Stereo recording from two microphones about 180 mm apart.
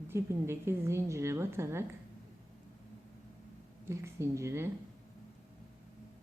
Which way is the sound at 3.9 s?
15° right (ahead or behind).